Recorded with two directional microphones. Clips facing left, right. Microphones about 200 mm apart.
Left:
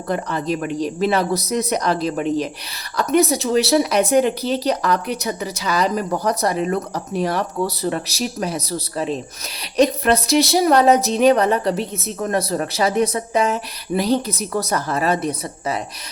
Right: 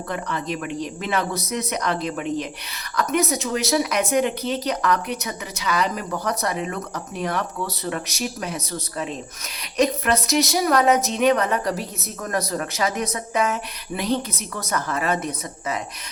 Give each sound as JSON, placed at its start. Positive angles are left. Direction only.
{"t": 0.1, "sound": "speech", "side_deg": 35}